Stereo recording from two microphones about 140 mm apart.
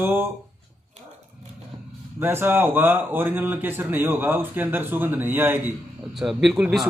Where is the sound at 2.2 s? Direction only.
15° right (ahead or behind).